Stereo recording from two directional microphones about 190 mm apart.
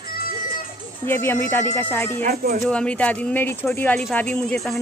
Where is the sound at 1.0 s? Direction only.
10° left (ahead or behind).